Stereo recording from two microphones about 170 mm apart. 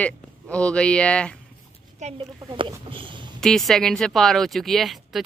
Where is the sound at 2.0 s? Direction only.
40° right (ahead or behind).